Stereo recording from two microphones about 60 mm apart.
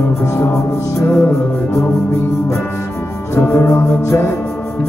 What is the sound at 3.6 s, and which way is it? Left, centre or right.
Mantra, left.